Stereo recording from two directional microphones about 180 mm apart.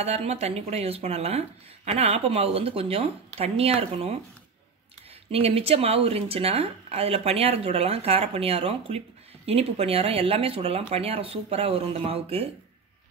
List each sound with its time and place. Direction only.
0.0 s speech: 35° right (ahead or behind)
5.3 s speech: 35° right (ahead or behind)